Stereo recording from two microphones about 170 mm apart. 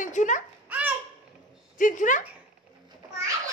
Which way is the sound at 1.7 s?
50° left (ahead or behind).